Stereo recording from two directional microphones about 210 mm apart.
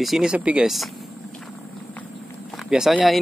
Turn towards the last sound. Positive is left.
turn(degrees=0)  # may be behind; listen again after turning